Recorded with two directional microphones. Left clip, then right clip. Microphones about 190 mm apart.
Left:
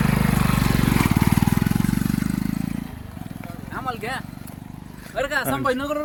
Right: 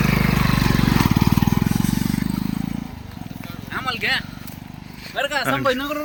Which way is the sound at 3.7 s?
45° left (ahead or behind).